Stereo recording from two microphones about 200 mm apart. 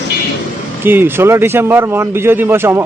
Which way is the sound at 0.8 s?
10° right (ahead or behind).